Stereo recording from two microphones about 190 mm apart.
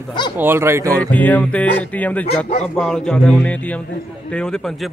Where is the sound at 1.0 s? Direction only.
10° left (ahead or behind).